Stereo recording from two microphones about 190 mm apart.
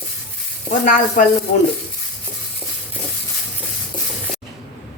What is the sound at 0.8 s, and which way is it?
Speech, 45° left (ahead or behind).